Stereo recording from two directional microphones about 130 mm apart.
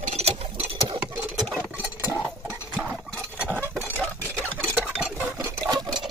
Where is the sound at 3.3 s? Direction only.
10° right (ahead or behind).